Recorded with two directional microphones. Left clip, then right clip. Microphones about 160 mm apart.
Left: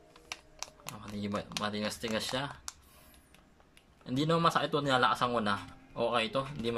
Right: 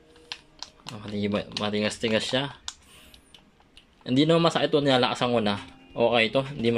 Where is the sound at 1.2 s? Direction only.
15° right (ahead or behind).